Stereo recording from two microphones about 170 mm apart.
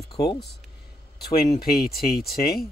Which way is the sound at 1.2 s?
65° left (ahead or behind).